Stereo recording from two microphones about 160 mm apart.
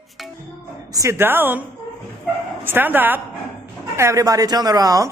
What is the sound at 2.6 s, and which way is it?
A man's voice, 10° right (ahead or behind).